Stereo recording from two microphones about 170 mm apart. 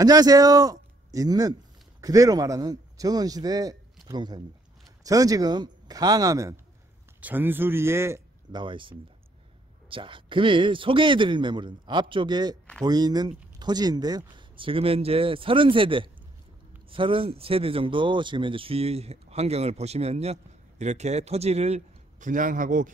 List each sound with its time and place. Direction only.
0.0 s a man's voice: 20° right (ahead or behind)
8.5 s a man's voice: 30° right (ahead or behind); by 22.8 s 50° right (ahead or behind)